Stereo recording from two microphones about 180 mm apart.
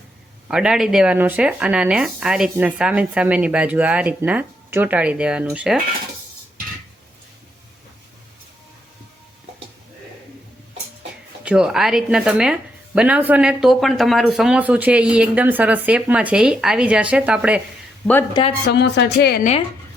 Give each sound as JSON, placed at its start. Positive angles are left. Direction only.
{"t": 0.4, "sound": "speech", "side_deg": -5}
{"t": 11.4, "sound": "speech", "side_deg": -5}
{"t": 18.0, "sound": "speech", "side_deg": 10}
{"t": 18.7, "sound": "speech", "side_deg": 70}
{"t": 19.4, "sound": "speech", "side_deg": 40}